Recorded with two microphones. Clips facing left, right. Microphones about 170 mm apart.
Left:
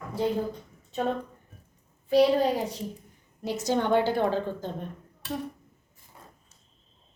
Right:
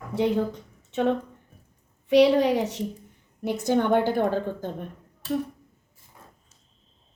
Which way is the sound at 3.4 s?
55° right (ahead or behind).